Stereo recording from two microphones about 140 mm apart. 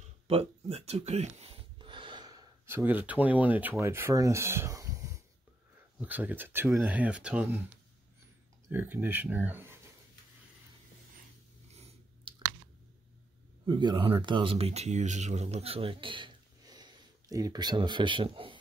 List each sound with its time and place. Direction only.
0.3 s gasp: 45° right (ahead or behind)
2.6 s speech: 15° right (ahead or behind)
5.9 s speech: 10° right (ahead or behind)
8.6 s speech: 15° right (ahead or behind)
11.7 s chewing: 45° right (ahead or behind)
13.7 s speech: 30° right (ahead or behind)